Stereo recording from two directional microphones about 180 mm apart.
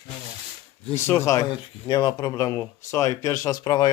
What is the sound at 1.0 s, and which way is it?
Speech, 15° left (ahead or behind).